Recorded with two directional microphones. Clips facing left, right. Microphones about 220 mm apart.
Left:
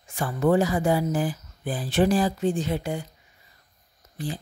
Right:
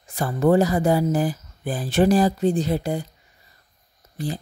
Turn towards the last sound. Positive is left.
turn(degrees=-40)  # may be behind; listen again after turning